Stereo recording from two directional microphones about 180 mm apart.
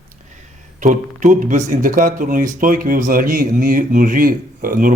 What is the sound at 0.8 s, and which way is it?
Speech, 45° right (ahead or behind).